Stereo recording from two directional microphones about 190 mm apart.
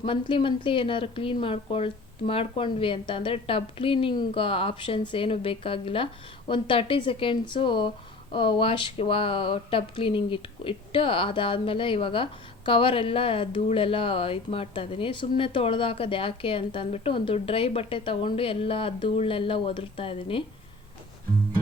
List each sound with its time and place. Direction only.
0.0 s speech: 25° left (ahead or behind)